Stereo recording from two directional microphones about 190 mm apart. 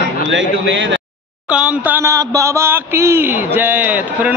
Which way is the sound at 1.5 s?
5° right (ahead or behind).